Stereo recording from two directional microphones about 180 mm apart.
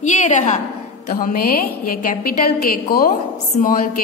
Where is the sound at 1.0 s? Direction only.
55° left (ahead or behind).